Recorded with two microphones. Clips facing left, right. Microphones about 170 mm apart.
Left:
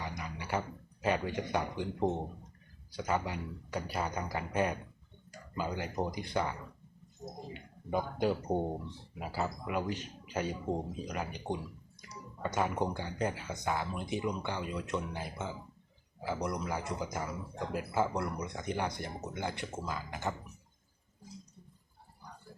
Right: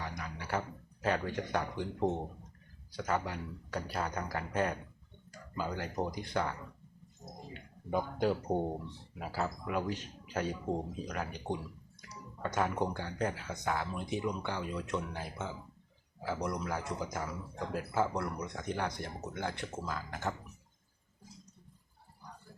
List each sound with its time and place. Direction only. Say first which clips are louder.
0.0 s a sound: left 1 dB; 5° left (ahead or behind)
1.0 s speech: left 1 dB; 5° left (ahead or behind)
7.9 s speech: even; centre (ahead or behind)